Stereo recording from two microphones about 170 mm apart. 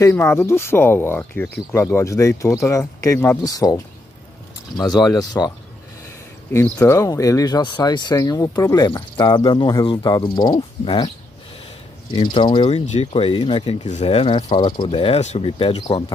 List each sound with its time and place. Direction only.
0.0 s speech: 15° left (ahead or behind)
6.5 s speech: 10° left (ahead or behind)
12.1 s speech: 30° left (ahead or behind)